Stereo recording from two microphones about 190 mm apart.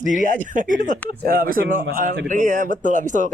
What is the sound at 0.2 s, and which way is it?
Speech, 40° right (ahead or behind).